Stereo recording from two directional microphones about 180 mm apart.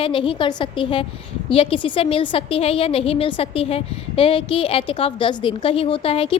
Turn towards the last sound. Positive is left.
turn(degrees=30)  # may be behind; listen again after turning